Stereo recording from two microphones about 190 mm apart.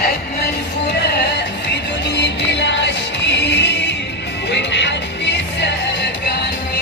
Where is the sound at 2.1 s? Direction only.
65° left (ahead or behind).